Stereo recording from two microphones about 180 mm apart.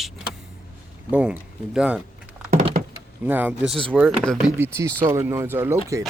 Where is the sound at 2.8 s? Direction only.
50° right (ahead or behind).